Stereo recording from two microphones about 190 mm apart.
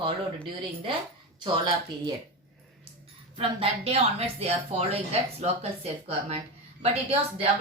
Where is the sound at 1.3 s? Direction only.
20° right (ahead or behind).